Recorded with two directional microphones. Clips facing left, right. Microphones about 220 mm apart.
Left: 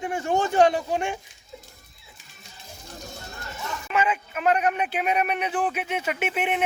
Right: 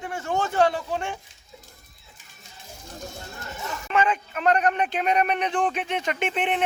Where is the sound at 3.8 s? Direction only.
5° left (ahead or behind).